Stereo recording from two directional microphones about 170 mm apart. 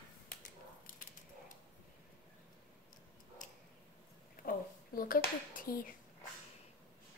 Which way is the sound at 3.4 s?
50° left (ahead or behind).